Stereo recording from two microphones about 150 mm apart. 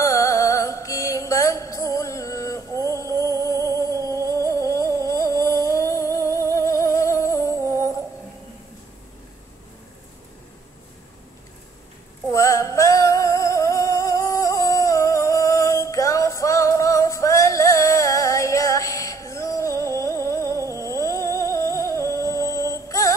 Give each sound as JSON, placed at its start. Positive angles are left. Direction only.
{"t": 0.0, "sound": "mantra", "side_deg": 20}
{"t": 2.7, "sound": "music", "side_deg": -20}
{"t": 3.5, "sound": "a sound", "side_deg": -20}
{"t": 3.9, "sound": "music", "side_deg": -20}
{"t": 4.5, "sound": "music", "side_deg": 20}
{"t": 7.5, "sound": "music", "side_deg": -20}
{"t": 12.3, "sound": "music", "side_deg": 20}
{"t": 22.0, "sound": "singing", "side_deg": 20}